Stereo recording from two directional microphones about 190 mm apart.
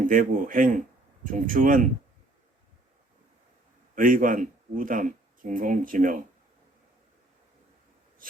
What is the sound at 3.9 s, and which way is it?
Speech, 45° right (ahead or behind).